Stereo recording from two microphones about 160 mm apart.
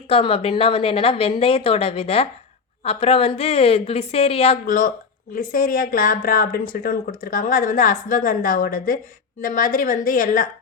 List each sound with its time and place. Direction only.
0.1 s a woman's voice: 35° left (ahead or behind)
4.6 s speech: 55° left (ahead or behind)